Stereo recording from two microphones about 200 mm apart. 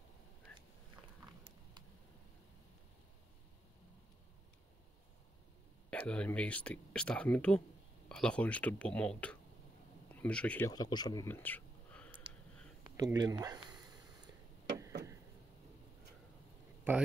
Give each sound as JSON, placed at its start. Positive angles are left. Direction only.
{"t": 1.4, "sound": "a sound", "side_deg": -20}
{"t": 5.9, "sound": "speech", "side_deg": 5}
{"t": 10.7, "sound": "speech", "side_deg": 20}
{"t": 12.9, "sound": "speech", "side_deg": -20}